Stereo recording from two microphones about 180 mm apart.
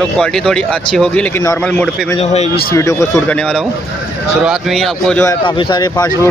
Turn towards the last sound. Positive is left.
turn(degrees=20)  # may be behind; listen again after turning